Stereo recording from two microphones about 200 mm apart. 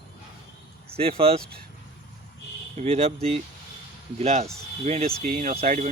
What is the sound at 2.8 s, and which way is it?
Speech, 30° right (ahead or behind).